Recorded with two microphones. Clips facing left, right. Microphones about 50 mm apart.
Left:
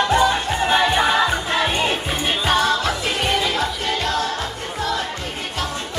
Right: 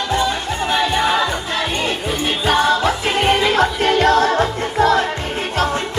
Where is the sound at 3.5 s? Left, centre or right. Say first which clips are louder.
Right 7 dB; right.